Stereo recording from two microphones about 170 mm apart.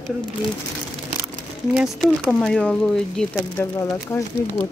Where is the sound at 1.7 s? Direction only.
Centre (ahead or behind).